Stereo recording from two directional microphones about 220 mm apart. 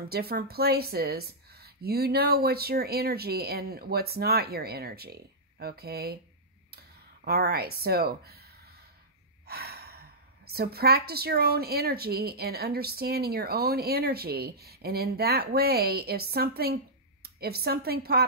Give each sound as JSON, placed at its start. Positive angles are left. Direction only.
{"t": 0.1, "sound": "a woman's voice", "side_deg": -45}
{"t": 7.2, "sound": "a woman's voice", "side_deg": -45}
{"t": 9.5, "sound": "a woman's voice", "side_deg": -45}